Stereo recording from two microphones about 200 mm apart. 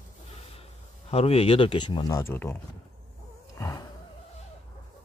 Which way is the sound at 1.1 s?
30° left (ahead or behind).